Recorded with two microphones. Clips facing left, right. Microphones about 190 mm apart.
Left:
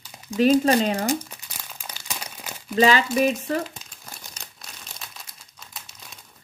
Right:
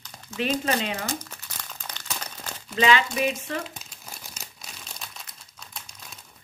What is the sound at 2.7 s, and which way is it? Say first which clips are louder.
Speech: left 4 dB; 40° left (ahead or behind).